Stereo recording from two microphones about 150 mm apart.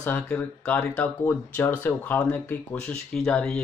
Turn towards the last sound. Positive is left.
turn(degrees=5)  # may be behind; listen again after turning